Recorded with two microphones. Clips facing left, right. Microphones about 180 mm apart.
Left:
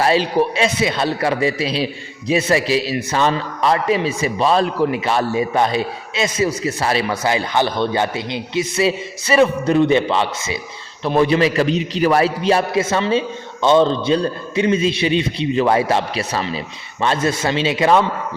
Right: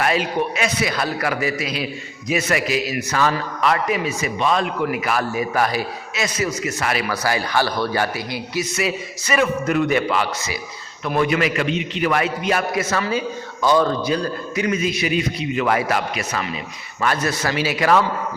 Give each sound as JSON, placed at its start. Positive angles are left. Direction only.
{"t": 0.0, "sound": "a man's voice", "side_deg": 30}